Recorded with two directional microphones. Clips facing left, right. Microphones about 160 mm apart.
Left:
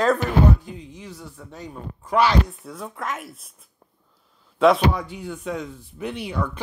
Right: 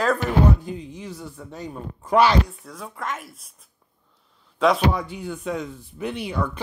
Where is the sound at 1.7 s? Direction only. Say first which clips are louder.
Right 3 dB; 40° right (ahead or behind).